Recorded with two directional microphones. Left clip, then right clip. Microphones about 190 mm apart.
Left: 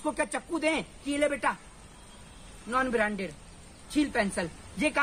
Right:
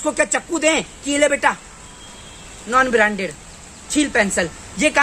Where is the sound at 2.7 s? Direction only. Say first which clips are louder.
Right 12 dB; centre (ahead or behind).